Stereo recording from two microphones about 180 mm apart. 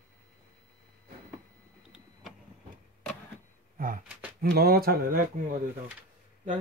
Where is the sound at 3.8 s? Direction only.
50° right (ahead or behind).